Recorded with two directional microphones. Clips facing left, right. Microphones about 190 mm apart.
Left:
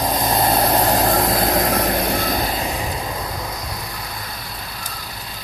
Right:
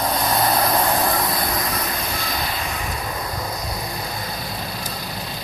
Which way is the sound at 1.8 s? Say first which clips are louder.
Left 7 dB; 55° left (ahead or behind).